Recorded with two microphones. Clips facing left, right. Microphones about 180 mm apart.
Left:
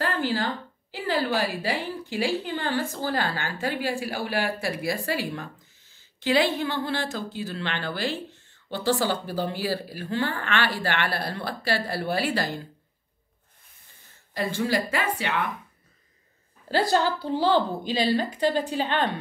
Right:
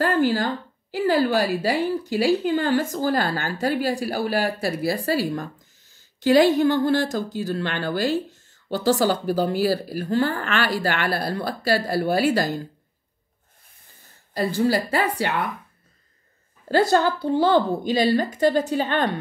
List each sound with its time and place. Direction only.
0.0 s a sound: 45° right (ahead or behind)
0.9 s a woman's voice: 45° right (ahead or behind)
14.3 s speech: 35° right (ahead or behind)
16.7 s a woman's voice: 50° right (ahead or behind)